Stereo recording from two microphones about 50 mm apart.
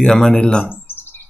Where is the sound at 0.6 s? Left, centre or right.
Left.